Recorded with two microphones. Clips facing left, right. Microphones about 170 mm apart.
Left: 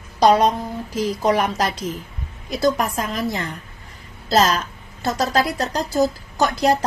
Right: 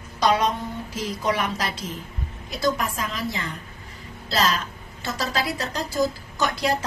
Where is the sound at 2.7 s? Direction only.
45° left (ahead or behind).